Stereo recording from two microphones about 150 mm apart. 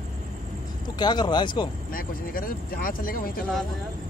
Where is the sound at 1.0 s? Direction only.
30° left (ahead or behind).